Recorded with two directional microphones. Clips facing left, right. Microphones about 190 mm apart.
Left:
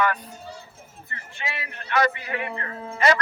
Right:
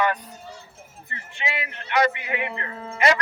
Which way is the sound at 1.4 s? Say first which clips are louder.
Right 4 dB; 20° right (ahead or behind).